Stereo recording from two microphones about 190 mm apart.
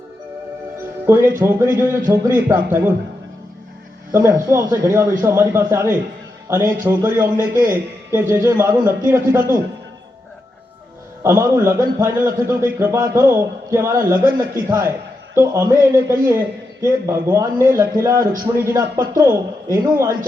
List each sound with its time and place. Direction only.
1.0 s a man's voice: 10° right (ahead or behind)
4.1 s a man's voice: 15° right (ahead or behind)
11.2 s a man's voice: 15° right (ahead or behind)